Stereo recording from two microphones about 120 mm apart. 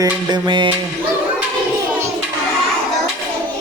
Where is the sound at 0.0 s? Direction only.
40° right (ahead or behind).